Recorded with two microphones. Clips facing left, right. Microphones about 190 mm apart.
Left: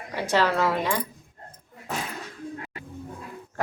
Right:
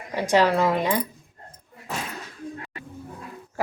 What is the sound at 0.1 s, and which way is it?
Speech, 15° right (ahead or behind).